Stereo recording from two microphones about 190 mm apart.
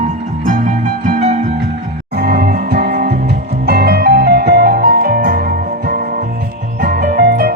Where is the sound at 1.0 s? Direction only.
45° right (ahead or behind).